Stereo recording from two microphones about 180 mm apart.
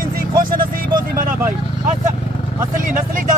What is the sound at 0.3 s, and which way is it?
Vehicle, 50° right (ahead or behind).